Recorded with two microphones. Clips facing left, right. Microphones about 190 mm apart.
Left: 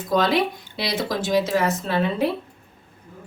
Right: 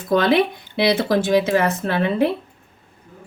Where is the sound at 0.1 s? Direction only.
60° right (ahead or behind).